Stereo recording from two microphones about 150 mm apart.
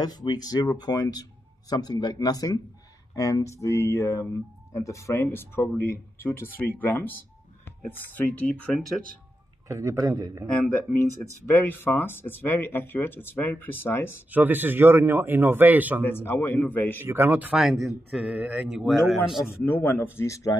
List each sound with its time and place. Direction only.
0.0 s speech: 30° left (ahead or behind); by 7.1 s 15° left (ahead or behind)
8.4 s a man's voice: 5° left (ahead or behind)
9.7 s a man's voice: 20° right (ahead or behind)
11.5 s speech: 15° left (ahead or behind)
14.3 s speech: 10° right (ahead or behind)
16.0 s speech: 15° left (ahead or behind)
17.0 s speech: 15° right (ahead or behind)
17.6 s a man's voice: centre (ahead or behind)
19.6 s speech: 15° left (ahead or behind)